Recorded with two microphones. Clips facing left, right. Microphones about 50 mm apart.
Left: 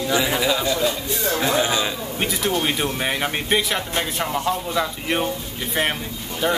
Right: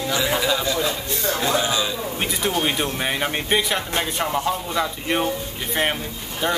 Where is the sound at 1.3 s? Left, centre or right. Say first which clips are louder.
Left 2 dB; centre.